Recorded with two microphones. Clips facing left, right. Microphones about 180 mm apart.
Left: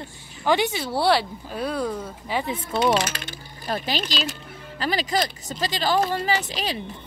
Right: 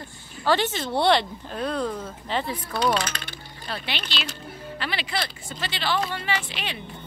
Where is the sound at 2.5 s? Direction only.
25° left (ahead or behind).